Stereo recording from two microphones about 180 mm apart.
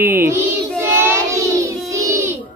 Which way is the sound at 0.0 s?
10° right (ahead or behind).